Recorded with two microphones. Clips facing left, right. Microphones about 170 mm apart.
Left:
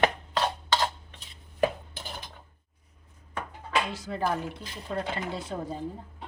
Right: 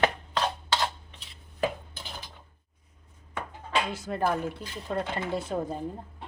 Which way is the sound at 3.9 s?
50° right (ahead or behind).